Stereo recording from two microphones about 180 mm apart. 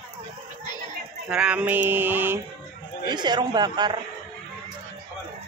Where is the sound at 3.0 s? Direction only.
25° right (ahead or behind).